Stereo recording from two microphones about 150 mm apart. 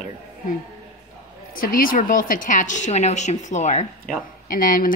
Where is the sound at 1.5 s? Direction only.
70° left (ahead or behind); by 3.8 s 50° left (ahead or behind).